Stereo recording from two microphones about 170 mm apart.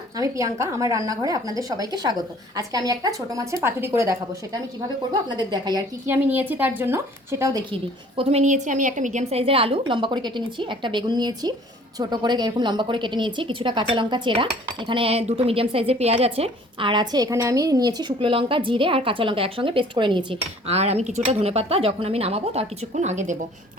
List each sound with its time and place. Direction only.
0.2 s a woman's voice: 20° right (ahead or behind)
6.1 s speech: 10° right (ahead or behind)
7.7 s a woman's voice: 30° right (ahead or behind)